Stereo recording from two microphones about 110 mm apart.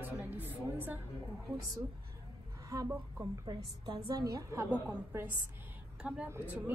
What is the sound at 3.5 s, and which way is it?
A woman's voice, 40° right (ahead or behind).